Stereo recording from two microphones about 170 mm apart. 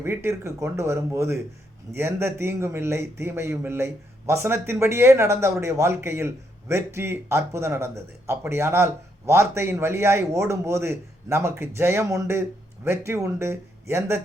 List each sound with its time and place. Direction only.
0.0 s a man's voice: 15° right (ahead or behind)